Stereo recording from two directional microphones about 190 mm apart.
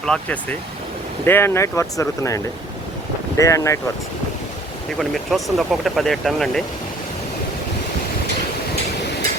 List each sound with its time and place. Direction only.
0.0 s speech: 5° left (ahead or behind)
4.9 s speech: centre (ahead or behind)